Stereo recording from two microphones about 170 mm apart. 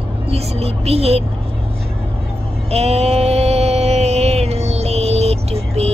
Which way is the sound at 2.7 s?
40° right (ahead or behind).